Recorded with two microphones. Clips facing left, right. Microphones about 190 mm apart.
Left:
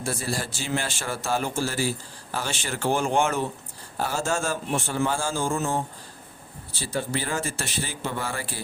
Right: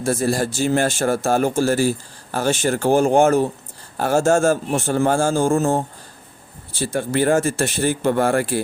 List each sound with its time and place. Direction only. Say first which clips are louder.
0.0 s speech: right 10 dB; 45° right (ahead or behind)